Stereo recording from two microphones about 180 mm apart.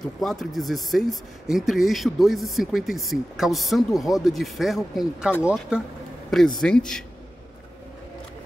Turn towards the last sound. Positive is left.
turn(degrees=5)  # may be behind; listen again after turning